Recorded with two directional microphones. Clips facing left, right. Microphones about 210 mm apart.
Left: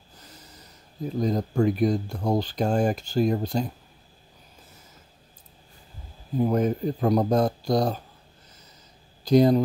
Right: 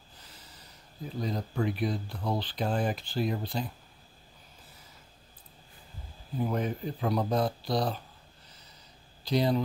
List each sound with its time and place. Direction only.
0.2 s speech: 45° left (ahead or behind)
6.3 s speech: 45° left (ahead or behind)
9.2 s speech: 45° left (ahead or behind)